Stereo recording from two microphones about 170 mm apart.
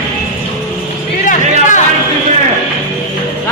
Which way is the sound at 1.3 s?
50° left (ahead or behind).